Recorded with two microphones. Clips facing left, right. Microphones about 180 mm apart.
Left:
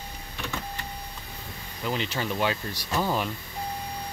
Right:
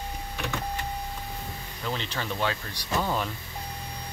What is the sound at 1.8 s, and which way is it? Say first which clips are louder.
Speech: left 3 dB; 10° left (ahead or behind).